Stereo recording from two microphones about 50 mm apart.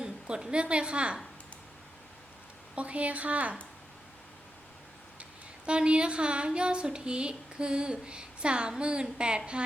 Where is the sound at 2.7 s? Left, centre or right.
Right.